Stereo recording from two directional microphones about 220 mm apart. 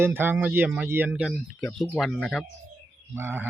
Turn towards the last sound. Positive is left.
turn(degrees=-10)  # may be behind; listen again after turning